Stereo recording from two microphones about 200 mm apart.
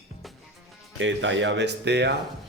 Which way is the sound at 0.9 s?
70° right (ahead or behind).